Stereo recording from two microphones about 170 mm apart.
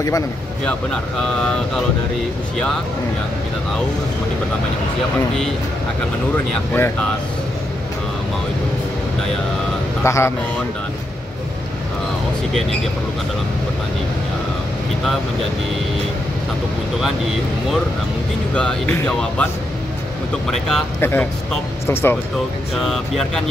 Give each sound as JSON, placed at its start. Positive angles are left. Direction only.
{"t": 0.7, "sound": "speech", "side_deg": 5}
{"t": 6.3, "sound": "speech", "side_deg": 10}
{"t": 10.0, "sound": "speech", "side_deg": 15}
{"t": 18.5, "sound": "speech", "side_deg": 5}
{"t": 22.8, "sound": "speech", "side_deg": 0}